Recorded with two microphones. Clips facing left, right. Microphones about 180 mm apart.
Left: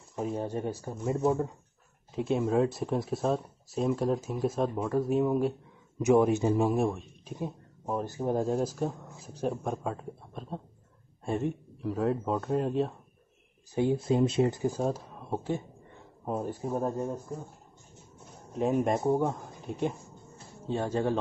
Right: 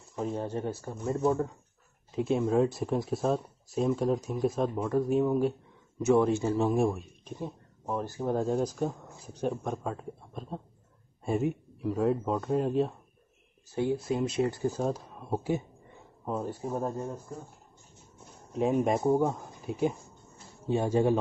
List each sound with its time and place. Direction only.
0.1 s speech: 10° left (ahead or behind)
1.1 s speech: 5° left (ahead or behind)
5.9 s speech: 15° left (ahead or behind)
6.7 s speech: centre (ahead or behind)
7.3 s speech: 15° left (ahead or behind)
8.5 s speech: centre (ahead or behind)
14.0 s speech: 25° left (ahead or behind)
14.8 s speech: 5° left (ahead or behind)
16.3 s speech: 15° left (ahead or behind)
18.5 s a man's voice: centre (ahead or behind)